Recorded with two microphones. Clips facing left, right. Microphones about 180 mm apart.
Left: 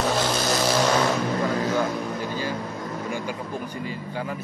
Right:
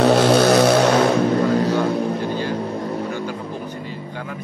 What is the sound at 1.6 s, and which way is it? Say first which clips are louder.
Vehicle: right 5 dB; 35° right (ahead or behind).